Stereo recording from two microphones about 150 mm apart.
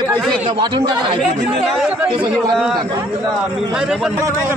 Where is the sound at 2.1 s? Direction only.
35° right (ahead or behind).